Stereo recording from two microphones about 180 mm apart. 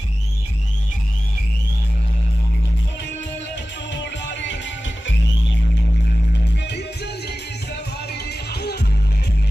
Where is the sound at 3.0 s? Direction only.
80° left.